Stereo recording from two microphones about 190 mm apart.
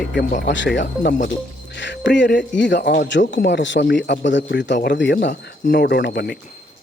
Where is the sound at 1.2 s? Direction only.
70° left (ahead or behind).